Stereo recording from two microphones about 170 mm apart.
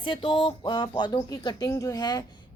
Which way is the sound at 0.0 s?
30° left (ahead or behind).